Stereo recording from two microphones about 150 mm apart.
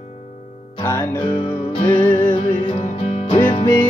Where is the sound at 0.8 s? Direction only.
15° left (ahead or behind).